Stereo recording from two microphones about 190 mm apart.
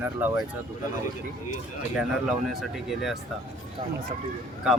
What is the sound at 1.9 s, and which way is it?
Speech, centre (ahead or behind).